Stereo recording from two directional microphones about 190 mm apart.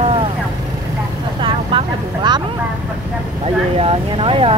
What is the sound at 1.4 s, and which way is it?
Speech, 25° right (ahead or behind).